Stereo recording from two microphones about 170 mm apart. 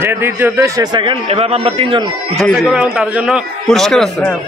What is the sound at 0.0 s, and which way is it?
A man's voice, 15° right (ahead or behind).